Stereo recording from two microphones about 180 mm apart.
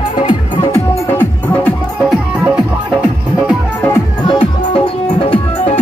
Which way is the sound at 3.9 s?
25° left (ahead or behind).